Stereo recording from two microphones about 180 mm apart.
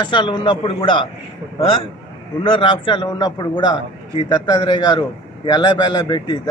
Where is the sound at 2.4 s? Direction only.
25° left (ahead or behind).